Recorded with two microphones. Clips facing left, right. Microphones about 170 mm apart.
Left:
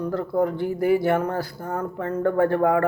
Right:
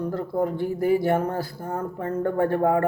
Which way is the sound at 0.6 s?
70° left (ahead or behind).